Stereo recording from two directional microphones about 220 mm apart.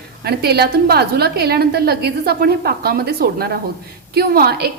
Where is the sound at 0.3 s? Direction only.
45° right (ahead or behind).